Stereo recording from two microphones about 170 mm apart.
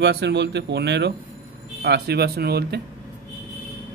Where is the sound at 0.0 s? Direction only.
90° right.